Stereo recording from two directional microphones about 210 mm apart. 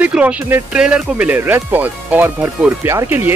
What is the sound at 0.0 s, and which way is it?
Speech, 5° right (ahead or behind).